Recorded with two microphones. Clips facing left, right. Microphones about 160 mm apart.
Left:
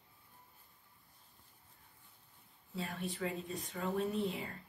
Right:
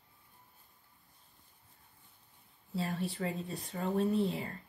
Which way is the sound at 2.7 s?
35° right (ahead or behind).